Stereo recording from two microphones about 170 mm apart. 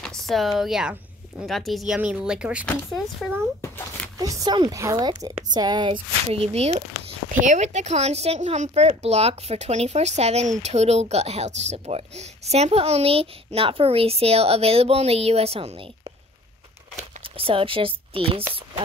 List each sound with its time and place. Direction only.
0.0 s speech: centre (ahead or behind)
3.6 s a sound: 10° left (ahead or behind)
4.2 s a woman's voice: 20° right (ahead or behind)
17.2 s speech: 30° right (ahead or behind)